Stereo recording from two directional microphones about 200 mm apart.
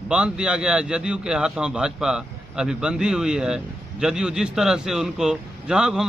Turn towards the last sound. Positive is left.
turn(degrees=-5)  # may be behind; listen again after turning